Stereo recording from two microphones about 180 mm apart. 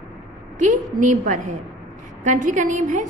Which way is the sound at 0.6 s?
45° right (ahead or behind).